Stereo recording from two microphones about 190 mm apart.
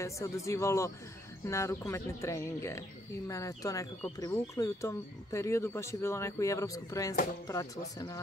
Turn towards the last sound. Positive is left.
turn(degrees=20)  # may be behind; listen again after turning